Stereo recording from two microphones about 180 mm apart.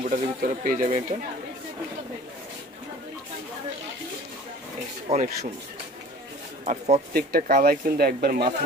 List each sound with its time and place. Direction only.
0.1 s speech: 50° right (ahead or behind)
5.1 s speech: 40° right (ahead or behind)
6.6 s speech: 40° right (ahead or behind)
7.2 s speech: 55° right (ahead or behind)